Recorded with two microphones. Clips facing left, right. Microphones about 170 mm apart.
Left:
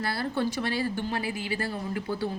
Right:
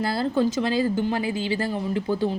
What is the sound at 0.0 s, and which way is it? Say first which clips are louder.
A woman's voice: right 6 dB; 25° right (ahead or behind).